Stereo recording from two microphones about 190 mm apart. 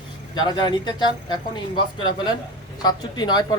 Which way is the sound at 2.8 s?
20° left (ahead or behind).